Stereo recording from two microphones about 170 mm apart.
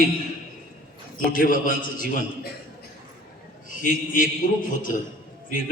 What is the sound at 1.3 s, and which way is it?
Speech, 55° left (ahead or behind).